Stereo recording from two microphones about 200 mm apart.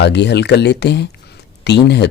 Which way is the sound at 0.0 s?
55° left (ahead or behind).